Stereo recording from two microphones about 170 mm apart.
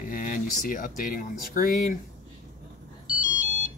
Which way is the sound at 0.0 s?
55° left (ahead or behind).